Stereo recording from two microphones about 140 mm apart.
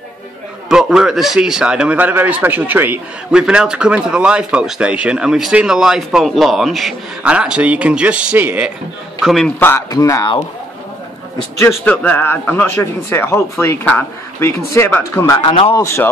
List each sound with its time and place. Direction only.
0.7 s a man's voice: 5° right (ahead or behind)
9.2 s a man's voice: centre (ahead or behind)
9.6 s speech: 15° left (ahead or behind)
11.8 s speech: 10° left (ahead or behind)
15.4 s speech: 40° left (ahead or behind)